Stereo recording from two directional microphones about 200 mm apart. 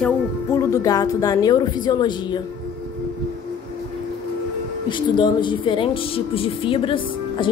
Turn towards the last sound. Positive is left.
turn(degrees=25)  # may be behind; listen again after turning